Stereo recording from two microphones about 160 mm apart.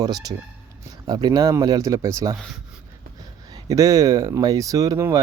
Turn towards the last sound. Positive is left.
turn(degrees=-20)  # may be behind; listen again after turning